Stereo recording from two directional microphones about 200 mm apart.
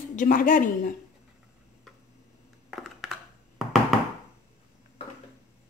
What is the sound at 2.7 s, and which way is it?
Crushing, centre (ahead or behind).